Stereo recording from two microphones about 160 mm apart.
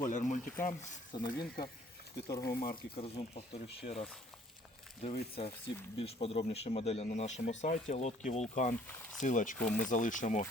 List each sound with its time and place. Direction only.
0.0 s speech: 50° left (ahead or behind)
1.1 s speech: 25° left (ahead or behind)
2.6 s speech: 70° left (ahead or behind)
3.0 s speech: 35° left (ahead or behind)
5.0 s speech: 40° left (ahead or behind)
9.6 s speech: 5° left (ahead or behind)
9.8 s speech: 50° left (ahead or behind)